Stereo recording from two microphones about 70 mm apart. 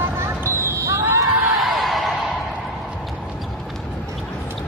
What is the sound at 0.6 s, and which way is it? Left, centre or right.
Basketball bounce, right.